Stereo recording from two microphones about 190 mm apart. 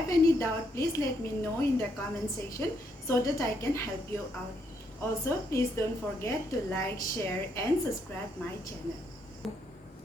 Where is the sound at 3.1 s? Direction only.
15° left (ahead or behind).